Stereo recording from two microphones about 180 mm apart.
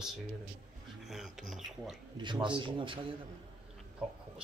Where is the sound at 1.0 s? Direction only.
Centre (ahead or behind).